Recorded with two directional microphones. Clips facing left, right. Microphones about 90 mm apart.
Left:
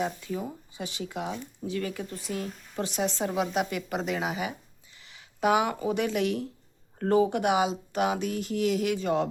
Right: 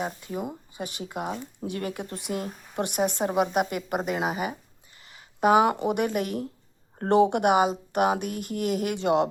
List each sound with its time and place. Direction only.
0.8 s speech: 50° right (ahead or behind)
5.1 s a sound: 45° right (ahead or behind)
5.8 s speech: 55° right (ahead or behind)
7.1 s speech: 65° right (ahead or behind); by 9.0 s 50° right (ahead or behind)
9.0 s speech: 65° right (ahead or behind)